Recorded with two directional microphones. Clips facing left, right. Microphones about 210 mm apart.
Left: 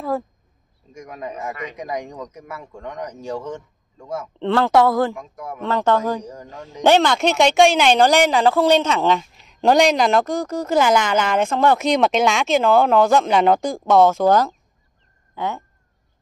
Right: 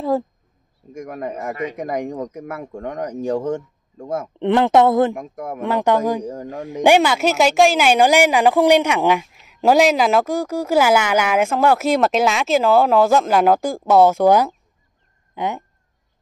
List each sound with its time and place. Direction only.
0.9 s a man's voice: 55° right (ahead or behind)
4.4 s speech: 20° right (ahead or behind)
5.1 s a man's voice: 50° right (ahead or behind)
5.6 s speech: 15° right (ahead or behind)
6.2 s a man's voice: 50° right (ahead or behind)
6.8 s speech: 10° right (ahead or behind)